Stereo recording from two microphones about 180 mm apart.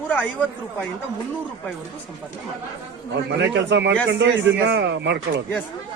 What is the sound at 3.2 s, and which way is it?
A man's voice, 75° right (ahead or behind).